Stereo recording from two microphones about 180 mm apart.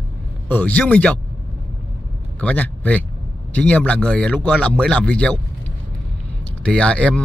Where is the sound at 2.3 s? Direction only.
5° left (ahead or behind).